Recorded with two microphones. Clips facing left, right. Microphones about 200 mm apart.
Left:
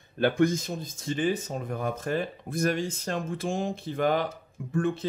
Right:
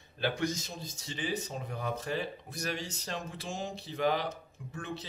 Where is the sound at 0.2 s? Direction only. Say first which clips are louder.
Left 9 dB; 50° left (ahead or behind).